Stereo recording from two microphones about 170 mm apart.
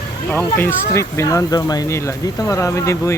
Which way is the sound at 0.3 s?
10° left (ahead or behind).